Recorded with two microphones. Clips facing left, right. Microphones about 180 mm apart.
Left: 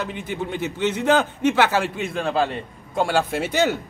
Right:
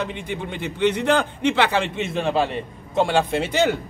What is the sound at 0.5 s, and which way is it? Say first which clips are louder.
Speech: right 4 dB; 60° right (ahead or behind).